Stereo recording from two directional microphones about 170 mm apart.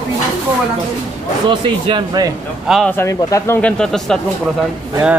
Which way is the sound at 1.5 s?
30° right (ahead or behind).